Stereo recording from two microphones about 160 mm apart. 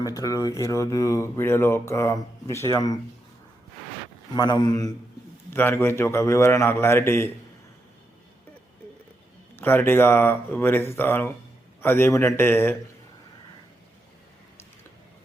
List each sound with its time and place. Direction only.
0.0 s mantra: 20° left (ahead or behind)
4.4 s mantra: 25° left (ahead or behind)
5.5 s a man's voice: 10° left (ahead or behind)
9.6 s a man's voice: 10° left (ahead or behind)